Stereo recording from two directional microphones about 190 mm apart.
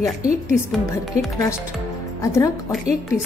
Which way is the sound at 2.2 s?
15° left (ahead or behind).